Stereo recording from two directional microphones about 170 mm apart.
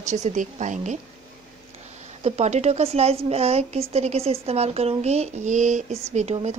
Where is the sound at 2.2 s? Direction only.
40° right (ahead or behind).